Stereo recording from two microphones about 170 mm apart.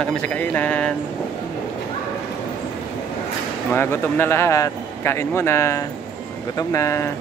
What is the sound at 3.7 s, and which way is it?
Speech, 15° left (ahead or behind).